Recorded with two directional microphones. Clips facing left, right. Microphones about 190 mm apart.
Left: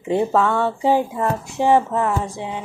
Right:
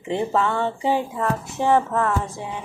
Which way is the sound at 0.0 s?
10° left (ahead or behind).